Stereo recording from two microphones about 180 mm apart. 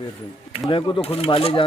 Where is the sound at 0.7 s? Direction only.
30° left (ahead or behind).